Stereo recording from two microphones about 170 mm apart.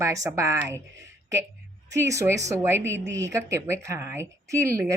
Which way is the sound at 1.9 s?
20° right (ahead or behind).